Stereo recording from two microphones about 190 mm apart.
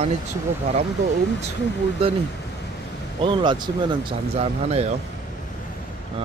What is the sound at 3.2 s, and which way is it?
Speech, 25° right (ahead or behind).